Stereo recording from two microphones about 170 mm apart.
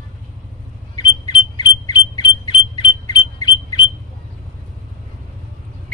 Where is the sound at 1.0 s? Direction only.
25° left (ahead or behind).